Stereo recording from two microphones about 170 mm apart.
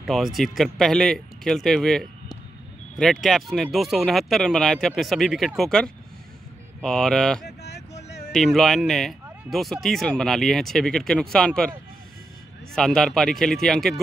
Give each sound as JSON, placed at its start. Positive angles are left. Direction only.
{"t": 0.0, "sound": "speech", "side_deg": 0}
{"t": 7.4, "sound": "vehicle", "side_deg": 80}
{"t": 8.3, "sound": "speech", "side_deg": 0}
{"t": 12.7, "sound": "speech", "side_deg": 5}